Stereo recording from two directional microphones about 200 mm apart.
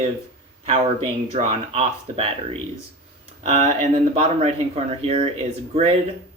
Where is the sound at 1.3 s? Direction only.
30° right (ahead or behind).